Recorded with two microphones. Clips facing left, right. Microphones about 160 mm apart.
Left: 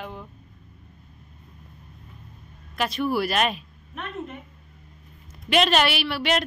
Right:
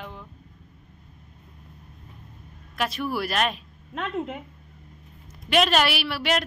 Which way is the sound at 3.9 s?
90° right.